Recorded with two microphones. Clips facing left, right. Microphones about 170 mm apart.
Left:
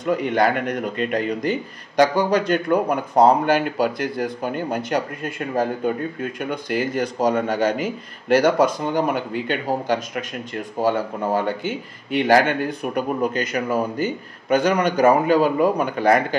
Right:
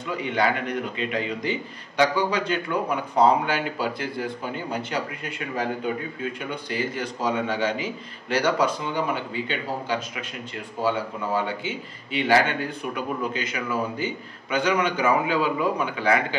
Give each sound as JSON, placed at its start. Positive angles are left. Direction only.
{"t": 0.0, "sound": "speech", "side_deg": 45}